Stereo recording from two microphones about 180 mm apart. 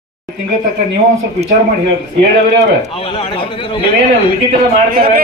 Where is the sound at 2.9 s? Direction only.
30° left (ahead or behind).